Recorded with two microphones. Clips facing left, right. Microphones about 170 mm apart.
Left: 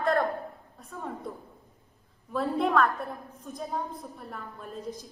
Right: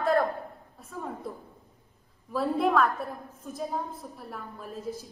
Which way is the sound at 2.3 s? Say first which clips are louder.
Right 1 dB; centre (ahead or behind).